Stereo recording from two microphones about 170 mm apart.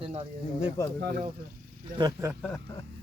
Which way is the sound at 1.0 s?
70° right (ahead or behind).